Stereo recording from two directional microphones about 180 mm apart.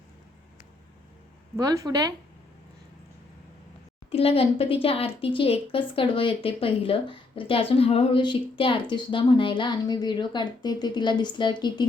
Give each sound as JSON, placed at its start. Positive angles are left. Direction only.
{"t": 1.5, "sound": "speech", "side_deg": -20}
{"t": 4.1, "sound": "speech", "side_deg": 30}